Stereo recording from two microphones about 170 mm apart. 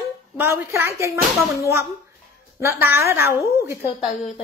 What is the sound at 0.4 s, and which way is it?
Speech, 15° right (ahead or behind).